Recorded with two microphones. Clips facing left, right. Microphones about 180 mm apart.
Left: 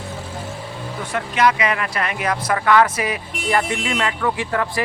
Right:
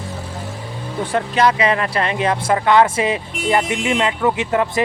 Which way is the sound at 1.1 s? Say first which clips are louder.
Right 2 dB; 30° right (ahead or behind).